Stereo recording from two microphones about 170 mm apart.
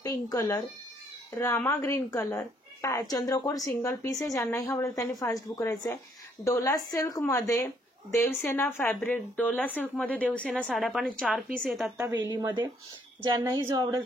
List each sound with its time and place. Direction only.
0.0 s a woman's voice: 20° left (ahead or behind); by 11.4 s 5° left (ahead or behind)
11.8 s a woman's voice: 15° right (ahead or behind)